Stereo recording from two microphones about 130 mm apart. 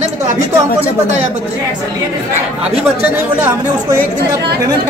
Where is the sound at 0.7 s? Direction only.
60° right (ahead or behind).